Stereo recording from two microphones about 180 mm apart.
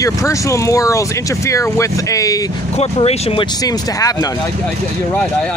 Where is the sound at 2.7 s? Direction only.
35° left (ahead or behind); by 4.3 s 20° left (ahead or behind).